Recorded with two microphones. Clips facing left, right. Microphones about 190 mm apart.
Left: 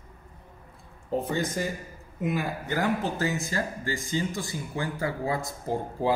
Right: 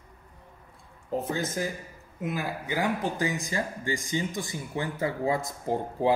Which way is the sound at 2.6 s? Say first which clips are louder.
Even; 10° right (ahead or behind).